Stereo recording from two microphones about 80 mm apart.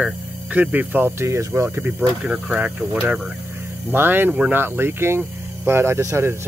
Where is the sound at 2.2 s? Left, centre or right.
Centre.